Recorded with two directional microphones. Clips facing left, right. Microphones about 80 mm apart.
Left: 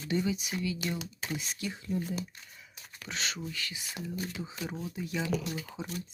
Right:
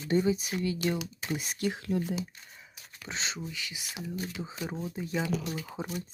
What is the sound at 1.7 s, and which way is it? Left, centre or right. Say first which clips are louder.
Speech: right 3 dB; right.